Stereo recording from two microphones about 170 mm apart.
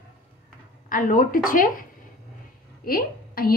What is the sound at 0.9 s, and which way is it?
Speech, 55° left (ahead or behind).